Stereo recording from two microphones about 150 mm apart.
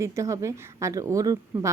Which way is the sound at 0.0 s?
20° right (ahead or behind).